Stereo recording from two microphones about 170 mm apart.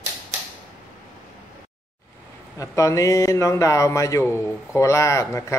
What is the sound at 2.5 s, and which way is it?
A man's voice, 20° left (ahead or behind).